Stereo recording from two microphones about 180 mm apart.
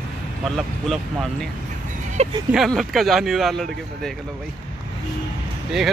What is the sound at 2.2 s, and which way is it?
Speech, 40° right (ahead or behind).